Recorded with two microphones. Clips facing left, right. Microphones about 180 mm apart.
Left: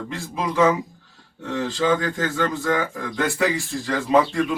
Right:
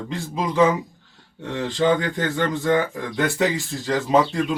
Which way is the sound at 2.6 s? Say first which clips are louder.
Right 3 dB; 25° right (ahead or behind).